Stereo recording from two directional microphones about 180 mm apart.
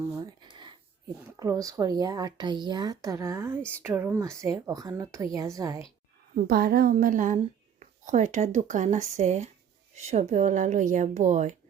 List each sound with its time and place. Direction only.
0.2 s a sound: 25° right (ahead or behind)
1.4 s speech: 20° right (ahead or behind)
6.3 s a woman's voice: 55° right (ahead or behind)